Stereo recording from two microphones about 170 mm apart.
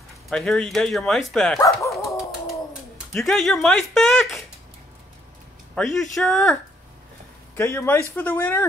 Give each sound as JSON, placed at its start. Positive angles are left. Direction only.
{"t": 0.3, "sound": "speech", "side_deg": 0}
{"t": 1.6, "sound": "a man's voice", "side_deg": 15}
{"t": 3.1, "sound": "speech", "side_deg": 0}
{"t": 5.8, "sound": "speech", "side_deg": 5}
{"t": 7.5, "sound": "a man's voice", "side_deg": 15}